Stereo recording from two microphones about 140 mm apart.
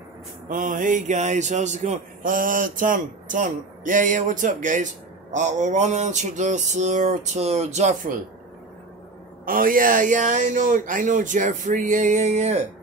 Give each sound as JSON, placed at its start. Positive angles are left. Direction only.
{"t": 0.5, "sound": "speech", "side_deg": -70}
{"t": 9.5, "sound": "speech", "side_deg": -80}